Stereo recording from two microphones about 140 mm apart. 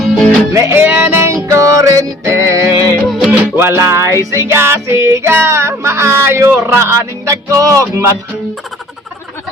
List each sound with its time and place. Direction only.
0.5 s music: 20° right (ahead or behind)
3.1 s music: 10° right (ahead or behind)